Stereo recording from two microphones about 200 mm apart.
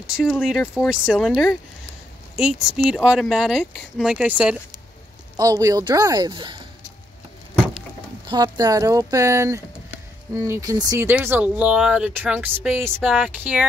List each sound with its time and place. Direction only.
0.0 s speech: 5° right (ahead or behind)
3.0 s speech: centre (ahead or behind); by 6.6 s 20° right (ahead or behind)
8.3 s speech: 20° right (ahead or behind)